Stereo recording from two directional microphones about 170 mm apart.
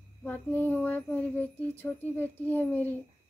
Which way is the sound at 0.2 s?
10° left (ahead or behind).